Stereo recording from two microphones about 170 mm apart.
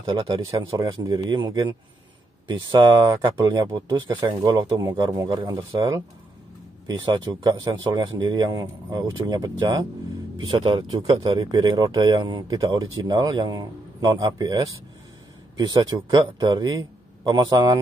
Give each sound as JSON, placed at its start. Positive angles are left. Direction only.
{"t": 0.0, "sound": "speech", "side_deg": -25}
{"t": 6.9, "sound": "speech", "side_deg": -25}